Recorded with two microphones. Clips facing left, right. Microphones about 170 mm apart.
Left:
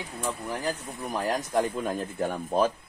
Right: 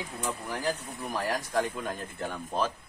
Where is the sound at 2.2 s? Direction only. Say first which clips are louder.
Left 6 dB; 40° left (ahead or behind).